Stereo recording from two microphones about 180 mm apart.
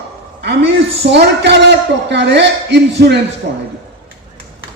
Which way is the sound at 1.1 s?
70° right (ahead or behind).